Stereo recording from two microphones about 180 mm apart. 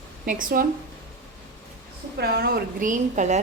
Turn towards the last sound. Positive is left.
turn(degrees=-40)  # may be behind; listen again after turning